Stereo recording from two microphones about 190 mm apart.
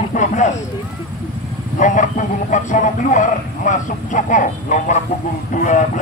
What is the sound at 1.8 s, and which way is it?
Speech, 40° left (ahead or behind).